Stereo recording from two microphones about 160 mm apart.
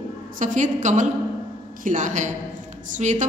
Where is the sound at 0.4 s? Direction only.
55° right (ahead or behind).